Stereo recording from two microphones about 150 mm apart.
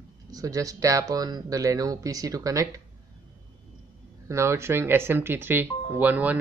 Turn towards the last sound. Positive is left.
turn(degrees=-10)  # may be behind; listen again after turning